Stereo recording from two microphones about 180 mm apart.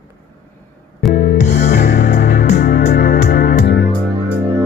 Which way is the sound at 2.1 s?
60° left (ahead or behind).